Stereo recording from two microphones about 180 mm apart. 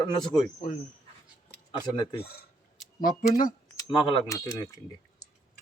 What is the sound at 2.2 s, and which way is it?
Speech, 60° left (ahead or behind).